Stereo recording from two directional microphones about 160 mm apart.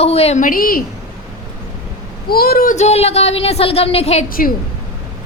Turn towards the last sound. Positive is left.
turn(degrees=65)  # may be behind; listen again after turning